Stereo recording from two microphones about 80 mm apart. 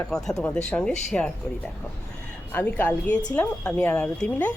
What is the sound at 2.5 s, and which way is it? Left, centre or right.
Speech, centre.